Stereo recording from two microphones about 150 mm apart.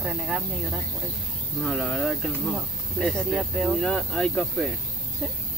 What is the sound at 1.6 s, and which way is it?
Speech, 5° left (ahead or behind).